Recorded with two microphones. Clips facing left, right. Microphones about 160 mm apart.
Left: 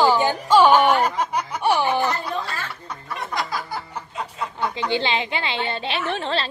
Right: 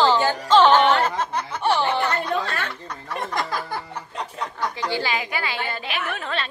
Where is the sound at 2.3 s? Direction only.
70° right (ahead or behind).